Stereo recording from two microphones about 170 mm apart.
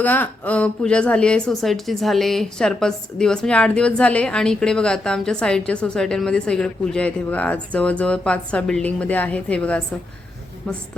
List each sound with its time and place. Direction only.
0.0 s speech: 10° left (ahead or behind)